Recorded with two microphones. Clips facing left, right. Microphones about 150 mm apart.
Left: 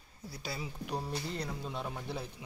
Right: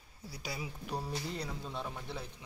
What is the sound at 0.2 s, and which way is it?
Speech, 10° right (ahead or behind).